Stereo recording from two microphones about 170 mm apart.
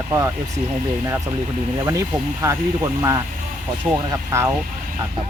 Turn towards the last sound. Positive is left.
turn(degrees=-15)  # may be behind; listen again after turning